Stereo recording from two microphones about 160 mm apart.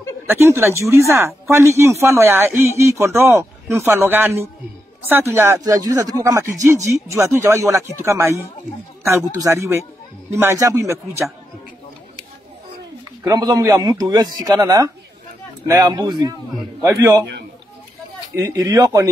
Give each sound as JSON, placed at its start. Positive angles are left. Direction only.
{"t": 0.3, "sound": "speech", "side_deg": -15}
{"t": 13.2, "sound": "speech", "side_deg": -25}
{"t": 18.3, "sound": "speech", "side_deg": -20}